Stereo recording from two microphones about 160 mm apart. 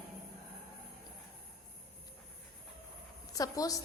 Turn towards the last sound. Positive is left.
turn(degrees=20)  # may be behind; listen again after turning